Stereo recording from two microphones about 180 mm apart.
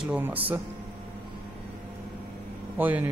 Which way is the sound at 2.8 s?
10° right (ahead or behind).